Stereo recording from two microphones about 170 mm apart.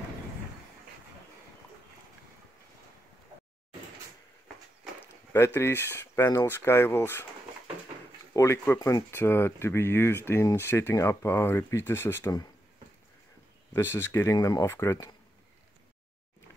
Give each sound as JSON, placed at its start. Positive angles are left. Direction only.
{"t": 5.3, "sound": "speech", "side_deg": 15}
{"t": 8.3, "sound": "speech", "side_deg": 15}
{"t": 13.7, "sound": "speech", "side_deg": 15}